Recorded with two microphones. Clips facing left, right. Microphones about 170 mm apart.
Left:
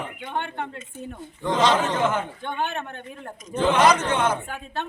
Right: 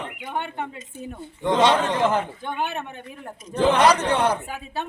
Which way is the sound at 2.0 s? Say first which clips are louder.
Right 2 dB; 35° right (ahead or behind).